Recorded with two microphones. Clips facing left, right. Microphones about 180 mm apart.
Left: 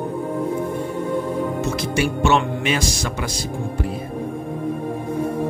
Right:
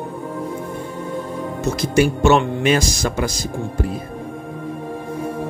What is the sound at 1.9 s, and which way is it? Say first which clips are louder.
Music: right 5 dB; 40° right (ahead or behind).